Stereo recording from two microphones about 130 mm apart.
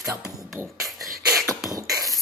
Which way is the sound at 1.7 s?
25° right (ahead or behind).